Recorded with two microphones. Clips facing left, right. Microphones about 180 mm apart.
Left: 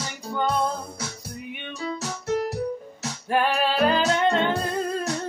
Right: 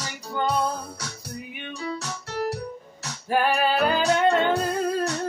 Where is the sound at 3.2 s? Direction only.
Centre (ahead or behind).